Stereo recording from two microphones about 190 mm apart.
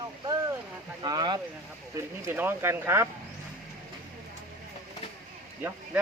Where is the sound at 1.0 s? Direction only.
20° right (ahead or behind).